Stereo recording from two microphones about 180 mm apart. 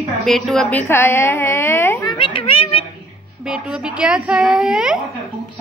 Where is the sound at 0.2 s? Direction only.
Centre (ahead or behind).